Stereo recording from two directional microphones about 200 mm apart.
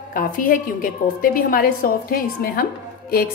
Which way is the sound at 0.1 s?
45° left (ahead or behind).